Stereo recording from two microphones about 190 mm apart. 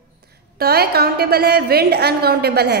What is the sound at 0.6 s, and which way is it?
A woman's voice, 55° right (ahead or behind).